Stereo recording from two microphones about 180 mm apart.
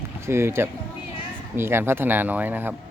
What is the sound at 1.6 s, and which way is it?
Speech, 15° right (ahead or behind).